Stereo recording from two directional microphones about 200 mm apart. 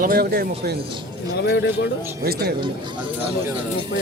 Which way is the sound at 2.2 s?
50° right (ahead or behind).